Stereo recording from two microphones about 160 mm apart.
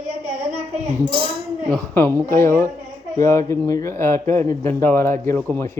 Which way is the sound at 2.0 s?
15° left (ahead or behind).